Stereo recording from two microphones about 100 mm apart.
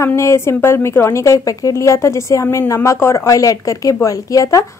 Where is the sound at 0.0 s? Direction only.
30° left (ahead or behind).